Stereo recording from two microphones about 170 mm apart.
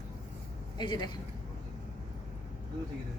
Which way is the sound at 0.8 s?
25° left (ahead or behind).